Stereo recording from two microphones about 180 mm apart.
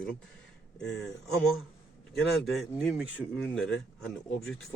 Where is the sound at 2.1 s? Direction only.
Centre (ahead or behind).